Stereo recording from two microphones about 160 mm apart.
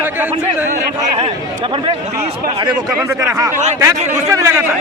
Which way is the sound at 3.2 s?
20° right (ahead or behind).